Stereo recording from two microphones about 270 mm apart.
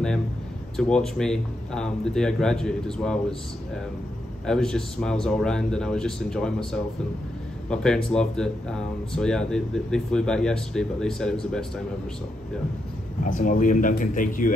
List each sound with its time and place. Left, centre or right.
0.7 s speech: centre
4.5 s speech: centre
7.7 s speech: centre
13.2 s speech: left